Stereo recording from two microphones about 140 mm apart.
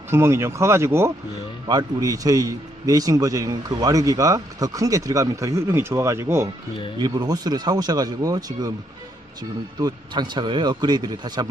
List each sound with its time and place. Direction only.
0.1 s a man's voice: 20° right (ahead or behind)
7.0 s a man's voice: 30° right (ahead or behind)
9.7 s a man's voice: 30° right (ahead or behind)